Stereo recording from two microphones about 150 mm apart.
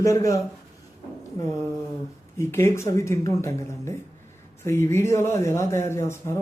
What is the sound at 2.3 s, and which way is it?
Speech, 20° left (ahead or behind).